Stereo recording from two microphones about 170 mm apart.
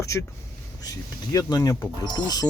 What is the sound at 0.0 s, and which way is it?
Speech, 15° left (ahead or behind).